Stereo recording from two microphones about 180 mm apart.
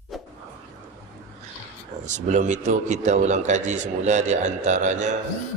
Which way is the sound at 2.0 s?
40° right (ahead or behind).